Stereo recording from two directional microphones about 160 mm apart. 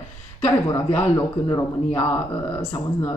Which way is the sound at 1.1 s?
20° left (ahead or behind).